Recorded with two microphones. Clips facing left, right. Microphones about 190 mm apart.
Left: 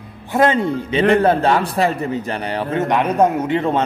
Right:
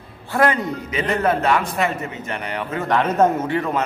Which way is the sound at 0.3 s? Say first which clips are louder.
Left 3 dB; 25° left (ahead or behind).